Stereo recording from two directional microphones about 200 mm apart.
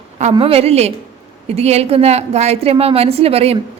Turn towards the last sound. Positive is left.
turn(degrees=-30)  # may be behind; listen again after turning